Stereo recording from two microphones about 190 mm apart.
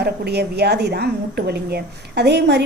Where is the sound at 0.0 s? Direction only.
60° right (ahead or behind).